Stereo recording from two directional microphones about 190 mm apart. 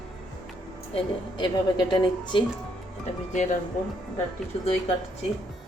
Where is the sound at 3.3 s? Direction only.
40° left (ahead or behind).